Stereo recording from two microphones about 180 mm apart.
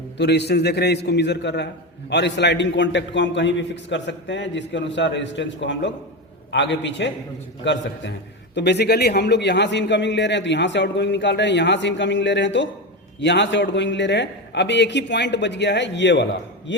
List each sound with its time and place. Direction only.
0.2 s a man's voice: 70° left (ahead or behind)